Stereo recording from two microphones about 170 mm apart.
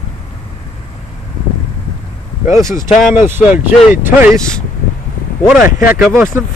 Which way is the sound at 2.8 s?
50° left (ahead or behind).